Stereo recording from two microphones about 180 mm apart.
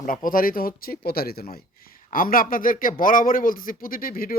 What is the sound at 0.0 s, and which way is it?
Speech, 50° left (ahead or behind).